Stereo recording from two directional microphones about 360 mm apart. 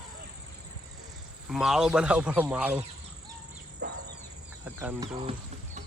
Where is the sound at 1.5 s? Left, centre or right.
Centre.